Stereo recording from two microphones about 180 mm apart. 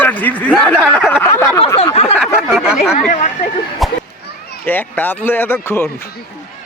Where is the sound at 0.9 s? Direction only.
Centre (ahead or behind).